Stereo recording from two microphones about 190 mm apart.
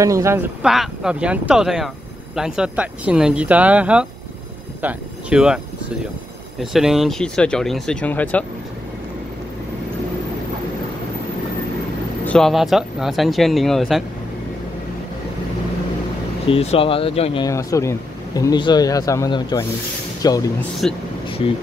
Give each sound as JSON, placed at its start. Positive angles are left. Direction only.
{"t": 0.0, "sound": "speech", "side_deg": -15}
{"t": 6.6, "sound": "speech", "side_deg": 0}
{"t": 12.3, "sound": "speech", "side_deg": 0}
{"t": 16.4, "sound": "speech", "side_deg": 30}
{"t": 17.5, "sound": "speech", "side_deg": 15}
{"t": 20.8, "sound": "speech", "side_deg": 5}